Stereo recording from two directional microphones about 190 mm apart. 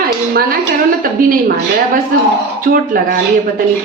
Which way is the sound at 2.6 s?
50° right (ahead or behind).